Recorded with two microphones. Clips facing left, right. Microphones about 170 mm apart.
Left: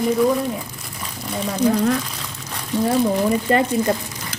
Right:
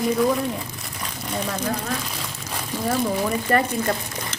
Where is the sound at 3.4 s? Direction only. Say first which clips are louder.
Left 3 dB; 20° left (ahead or behind).